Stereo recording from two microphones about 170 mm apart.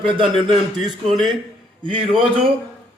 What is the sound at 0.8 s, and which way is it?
Speech, centre (ahead or behind).